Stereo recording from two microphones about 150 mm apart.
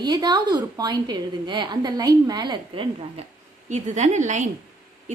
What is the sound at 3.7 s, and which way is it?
Speech, 55° right (ahead or behind).